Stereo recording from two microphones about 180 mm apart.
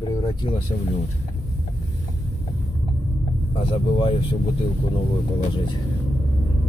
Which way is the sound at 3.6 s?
30° left (ahead or behind).